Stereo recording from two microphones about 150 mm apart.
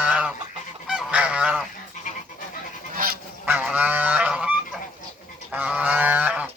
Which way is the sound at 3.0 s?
85° right.